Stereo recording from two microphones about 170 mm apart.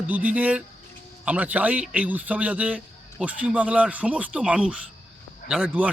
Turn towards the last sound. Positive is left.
turn(degrees=-10)  # may be behind; listen again after turning